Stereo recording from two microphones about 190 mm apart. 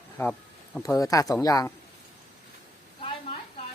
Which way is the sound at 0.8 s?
15° left (ahead or behind).